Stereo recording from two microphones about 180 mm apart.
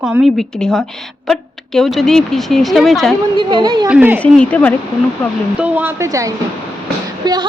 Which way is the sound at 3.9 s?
10° right (ahead or behind).